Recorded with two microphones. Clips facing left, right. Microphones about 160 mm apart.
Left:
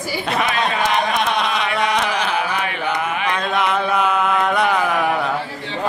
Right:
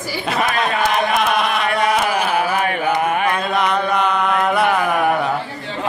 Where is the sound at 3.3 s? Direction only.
Centre (ahead or behind).